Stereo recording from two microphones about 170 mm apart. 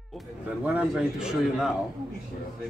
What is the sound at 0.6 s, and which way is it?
A man's voice, 5° right (ahead or behind).